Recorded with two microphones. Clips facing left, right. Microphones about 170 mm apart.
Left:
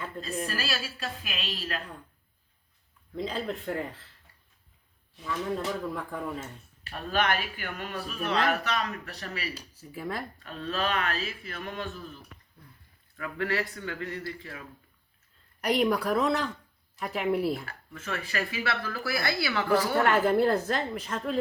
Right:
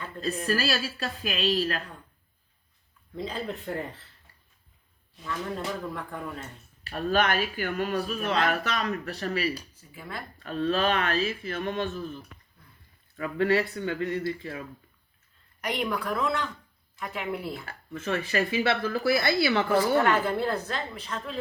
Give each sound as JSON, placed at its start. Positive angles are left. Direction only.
{"t": 0.2, "sound": "a woman's voice", "side_deg": -40}
{"t": 3.2, "sound": "speech", "side_deg": 0}
{"t": 5.9, "sound": "speech", "side_deg": 5}
{"t": 6.9, "sound": "a woman's voice", "side_deg": -35}
{"t": 9.9, "sound": "speech", "side_deg": 40}
{"t": 10.4, "sound": "speech", "side_deg": -30}
{"t": 13.1, "sound": "speech", "side_deg": -25}
{"t": 15.6, "sound": "speech", "side_deg": 40}
{"t": 17.7, "sound": "speech", "side_deg": -20}
{"t": 20.1, "sound": "a woman's voice", "side_deg": 40}